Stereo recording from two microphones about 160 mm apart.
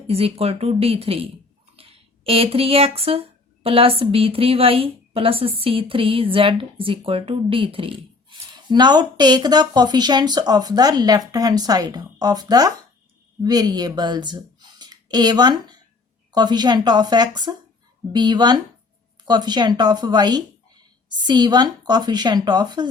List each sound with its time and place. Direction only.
0.1 s a woman's voice: 40° right (ahead or behind)